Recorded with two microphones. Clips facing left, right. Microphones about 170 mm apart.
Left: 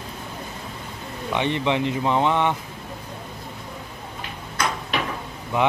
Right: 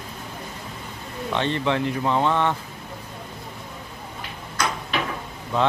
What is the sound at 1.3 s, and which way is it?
Speech, 15° left (ahead or behind).